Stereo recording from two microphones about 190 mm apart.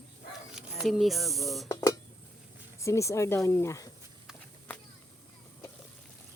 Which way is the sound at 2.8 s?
15° left (ahead or behind).